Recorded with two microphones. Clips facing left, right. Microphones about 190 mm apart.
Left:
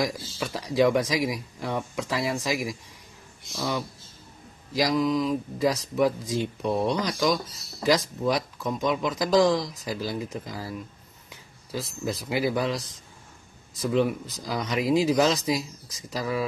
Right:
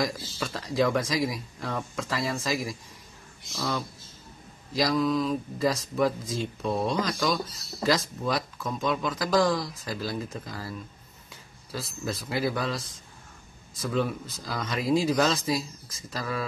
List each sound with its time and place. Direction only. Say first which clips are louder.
0.0 s speech: left 1 dB; 10° left (ahead or behind)
4.7 s speech: left 1 dB; 15° left (ahead or behind)
13.7 s speech: left 4 dB; 15° left (ahead or behind)